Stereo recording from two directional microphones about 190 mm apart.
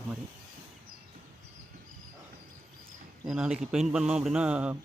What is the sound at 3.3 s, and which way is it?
Speech, 5° right (ahead or behind).